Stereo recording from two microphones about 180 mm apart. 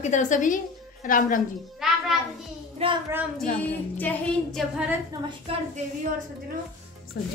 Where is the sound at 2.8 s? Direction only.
35° right (ahead or behind).